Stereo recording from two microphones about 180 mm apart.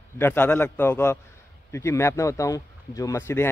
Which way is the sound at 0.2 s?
10° left (ahead or behind).